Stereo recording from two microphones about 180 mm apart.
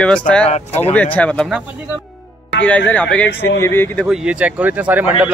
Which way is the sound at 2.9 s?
5° left (ahead or behind).